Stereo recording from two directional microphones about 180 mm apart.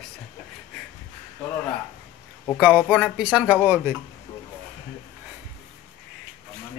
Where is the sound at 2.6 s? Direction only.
10° right (ahead or behind).